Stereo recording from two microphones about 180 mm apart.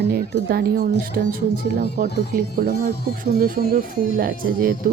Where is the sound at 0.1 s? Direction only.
60° right (ahead or behind).